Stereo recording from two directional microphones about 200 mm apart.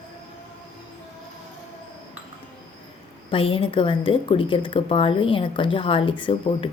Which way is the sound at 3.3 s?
25° left (ahead or behind).